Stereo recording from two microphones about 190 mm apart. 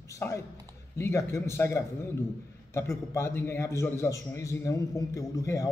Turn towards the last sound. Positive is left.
turn(degrees=15)  # may be behind; listen again after turning